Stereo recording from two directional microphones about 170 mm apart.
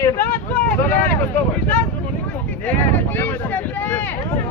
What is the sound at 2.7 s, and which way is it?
Speech, 10° left (ahead or behind).